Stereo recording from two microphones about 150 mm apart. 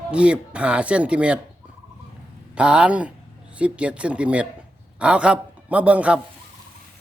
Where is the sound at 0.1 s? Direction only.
5° right (ahead or behind).